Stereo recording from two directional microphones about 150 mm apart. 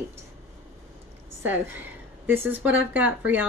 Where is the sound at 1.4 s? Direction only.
15° right (ahead or behind).